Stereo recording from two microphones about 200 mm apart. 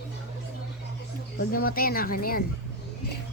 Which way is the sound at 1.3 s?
50° left (ahead or behind).